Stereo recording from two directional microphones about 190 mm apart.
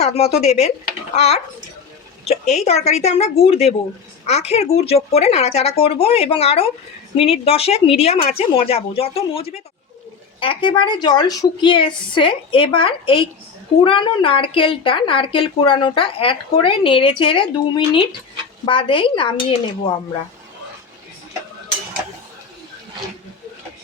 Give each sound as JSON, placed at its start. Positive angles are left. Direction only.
{"t": 0.0, "sound": "a woman's voice", "side_deg": 35}